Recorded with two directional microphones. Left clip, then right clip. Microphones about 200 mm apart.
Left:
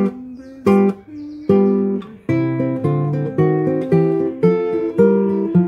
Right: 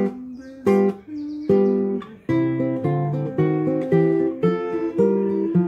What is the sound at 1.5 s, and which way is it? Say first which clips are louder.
Music: left 3 dB; 25° left (ahead or behind).